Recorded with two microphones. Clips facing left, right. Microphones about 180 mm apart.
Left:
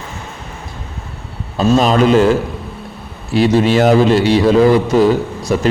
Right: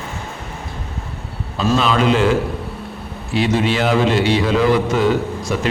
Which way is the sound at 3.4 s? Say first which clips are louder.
Left 6 dB; 40° left (ahead or behind).